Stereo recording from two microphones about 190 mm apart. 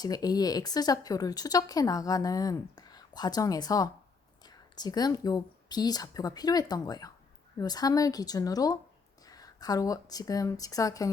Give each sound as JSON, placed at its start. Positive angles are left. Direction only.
{"t": 0.0, "sound": "a woman's voice", "side_deg": 20}